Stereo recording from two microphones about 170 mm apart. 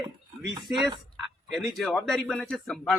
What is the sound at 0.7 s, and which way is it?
Speech, centre (ahead or behind).